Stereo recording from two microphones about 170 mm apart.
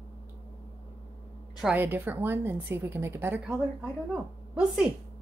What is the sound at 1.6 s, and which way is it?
A woman's voice, 10° right (ahead or behind).